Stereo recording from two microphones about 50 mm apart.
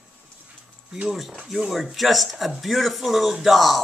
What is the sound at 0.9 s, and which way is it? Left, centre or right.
Speech, centre.